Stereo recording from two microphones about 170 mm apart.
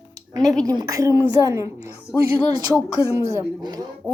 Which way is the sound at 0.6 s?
20° right (ahead or behind).